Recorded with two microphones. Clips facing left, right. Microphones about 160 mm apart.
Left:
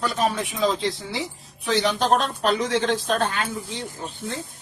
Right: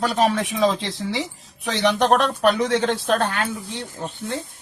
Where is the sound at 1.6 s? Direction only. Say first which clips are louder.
Right 2 dB; 70° right (ahead or behind).